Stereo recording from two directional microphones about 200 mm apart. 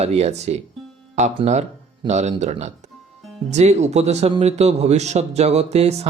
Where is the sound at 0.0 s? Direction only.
30° right (ahead or behind).